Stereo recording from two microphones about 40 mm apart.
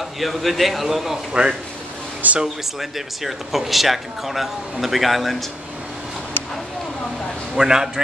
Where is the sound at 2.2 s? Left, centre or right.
Right.